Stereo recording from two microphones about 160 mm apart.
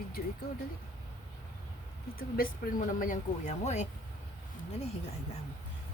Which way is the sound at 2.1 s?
65° left (ahead or behind).